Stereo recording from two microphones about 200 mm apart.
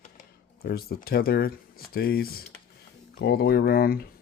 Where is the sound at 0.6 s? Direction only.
50° left (ahead or behind).